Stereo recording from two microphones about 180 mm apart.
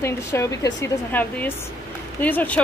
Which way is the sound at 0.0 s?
15° left (ahead or behind).